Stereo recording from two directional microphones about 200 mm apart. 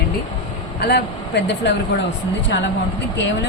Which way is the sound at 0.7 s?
55° left (ahead or behind).